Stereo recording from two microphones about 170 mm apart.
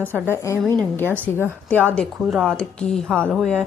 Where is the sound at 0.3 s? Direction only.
15° left (ahead or behind).